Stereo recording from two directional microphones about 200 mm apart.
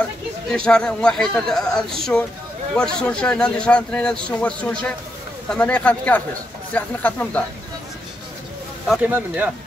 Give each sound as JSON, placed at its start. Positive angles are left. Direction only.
{"t": 0.5, "sound": "speech", "side_deg": 5}
{"t": 8.8, "sound": "speech", "side_deg": 0}